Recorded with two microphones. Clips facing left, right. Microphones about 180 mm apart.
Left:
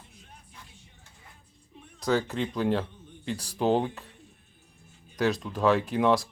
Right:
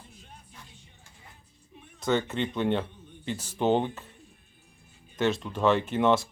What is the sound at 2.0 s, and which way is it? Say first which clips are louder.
Speech: even; centre (ahead or behind).